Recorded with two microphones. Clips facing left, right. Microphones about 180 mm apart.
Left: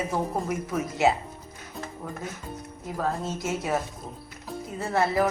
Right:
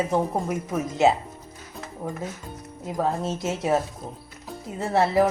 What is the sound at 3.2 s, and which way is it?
Speech, 20° right (ahead or behind).